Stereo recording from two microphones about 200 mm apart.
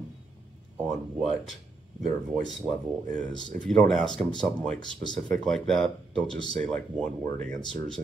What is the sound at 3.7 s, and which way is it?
Speech, 5° left (ahead or behind).